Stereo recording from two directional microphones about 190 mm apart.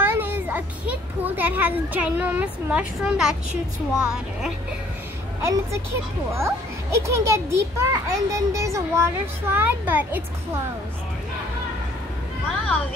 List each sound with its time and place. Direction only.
0.0 s a child's voice: 10° right (ahead or behind)
5.4 s a child's voice: 15° right (ahead or behind)
12.4 s a sound: 5° left (ahead or behind)